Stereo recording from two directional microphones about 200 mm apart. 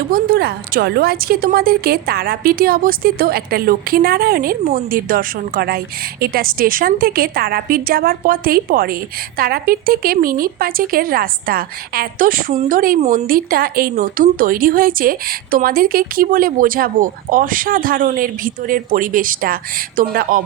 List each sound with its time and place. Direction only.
0.1 s speech: 50° right (ahead or behind)